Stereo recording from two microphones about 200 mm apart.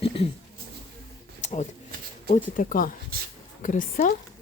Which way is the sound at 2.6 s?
45° left (ahead or behind).